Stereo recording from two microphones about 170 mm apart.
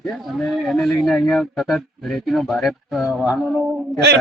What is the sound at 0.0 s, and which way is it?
A man's voice, centre (ahead or behind).